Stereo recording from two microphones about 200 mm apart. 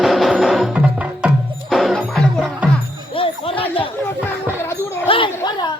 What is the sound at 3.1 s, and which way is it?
Music, 25° left (ahead or behind).